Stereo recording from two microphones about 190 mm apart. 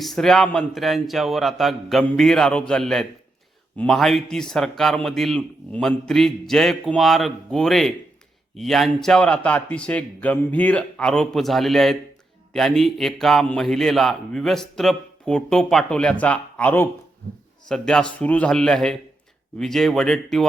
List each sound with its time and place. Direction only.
0.0 s a man's voice: centre (ahead or behind)